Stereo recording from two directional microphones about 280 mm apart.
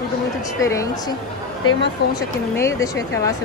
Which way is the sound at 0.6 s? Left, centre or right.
Centre.